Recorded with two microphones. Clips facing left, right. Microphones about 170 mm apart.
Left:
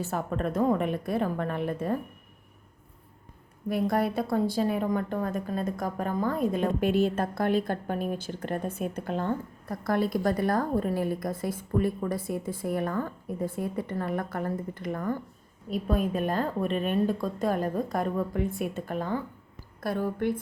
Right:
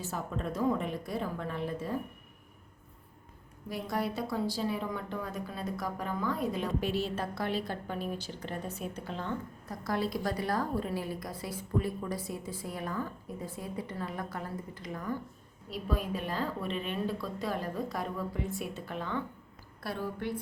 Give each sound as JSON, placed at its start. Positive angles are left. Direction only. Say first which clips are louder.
{"t": 0.0, "sound": "a woman's voice", "louder": "left 6 dB", "side_deg": 60}
{"t": 3.7, "sound": "a woman's voice", "louder": "left 8 dB", "side_deg": 55}